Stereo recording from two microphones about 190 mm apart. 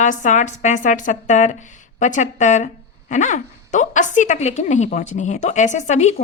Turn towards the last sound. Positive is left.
turn(degrees=35)  # may be behind; listen again after turning